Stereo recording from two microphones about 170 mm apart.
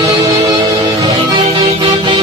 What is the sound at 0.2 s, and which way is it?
Music, 35° right (ahead or behind).